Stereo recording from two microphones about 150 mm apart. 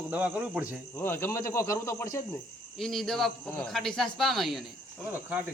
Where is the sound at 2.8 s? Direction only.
Centre (ahead or behind).